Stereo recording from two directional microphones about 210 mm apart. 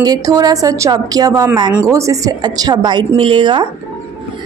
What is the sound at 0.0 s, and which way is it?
A woman's voice, 20° right (ahead or behind).